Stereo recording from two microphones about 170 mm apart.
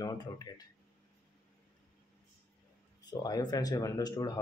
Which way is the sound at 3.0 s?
25° left (ahead or behind).